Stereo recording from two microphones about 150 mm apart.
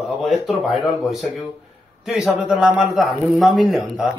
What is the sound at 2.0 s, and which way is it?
A man's voice, centre (ahead or behind).